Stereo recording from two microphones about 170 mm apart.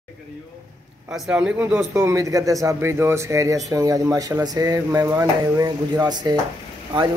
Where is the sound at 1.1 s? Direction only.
5° right (ahead or behind).